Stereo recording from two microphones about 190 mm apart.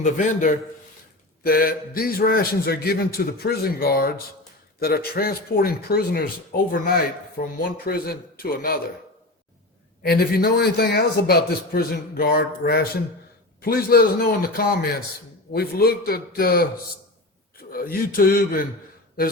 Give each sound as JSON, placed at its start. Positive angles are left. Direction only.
{"t": 0.0, "sound": "a man's voice", "side_deg": 40}
{"t": 10.0, "sound": "a man's voice", "side_deg": 55}
{"t": 17.7, "sound": "speech", "side_deg": 50}